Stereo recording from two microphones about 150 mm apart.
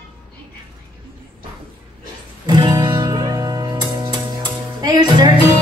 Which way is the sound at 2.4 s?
30° right (ahead or behind).